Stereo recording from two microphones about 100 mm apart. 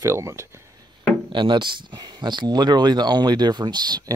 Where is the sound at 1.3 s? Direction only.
55° right (ahead or behind).